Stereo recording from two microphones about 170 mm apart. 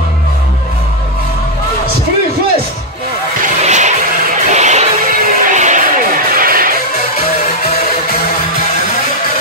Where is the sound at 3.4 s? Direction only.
45° right (ahead or behind).